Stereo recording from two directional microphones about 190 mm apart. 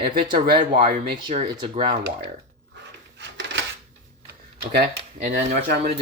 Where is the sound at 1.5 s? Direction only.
25° right (ahead or behind).